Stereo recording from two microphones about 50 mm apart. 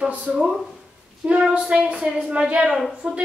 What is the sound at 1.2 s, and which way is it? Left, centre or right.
A woman's voice, right.